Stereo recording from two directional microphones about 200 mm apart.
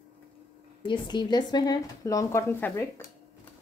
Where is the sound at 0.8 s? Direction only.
25° left (ahead or behind).